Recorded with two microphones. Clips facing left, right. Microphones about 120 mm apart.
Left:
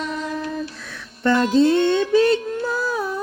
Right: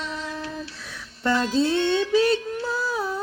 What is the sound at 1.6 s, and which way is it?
Music, 45° left (ahead or behind).